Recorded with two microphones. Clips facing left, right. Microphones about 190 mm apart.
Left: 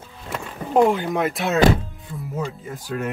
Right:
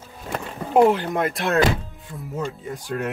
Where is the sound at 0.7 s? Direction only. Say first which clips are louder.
Right 1 dB; centre (ahead or behind).